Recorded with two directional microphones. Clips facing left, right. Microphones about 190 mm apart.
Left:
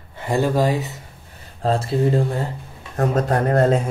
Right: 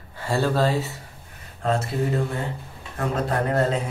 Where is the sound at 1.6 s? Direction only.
30° left (ahead or behind).